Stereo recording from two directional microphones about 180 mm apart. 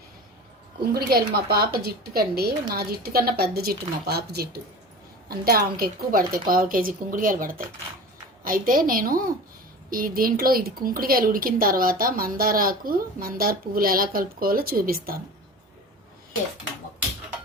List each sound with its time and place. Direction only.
0.9 s a woman's voice: 60° right (ahead or behind)